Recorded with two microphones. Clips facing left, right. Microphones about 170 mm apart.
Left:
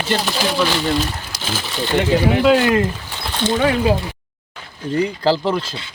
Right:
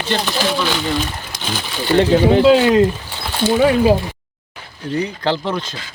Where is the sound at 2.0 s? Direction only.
30° right (ahead or behind).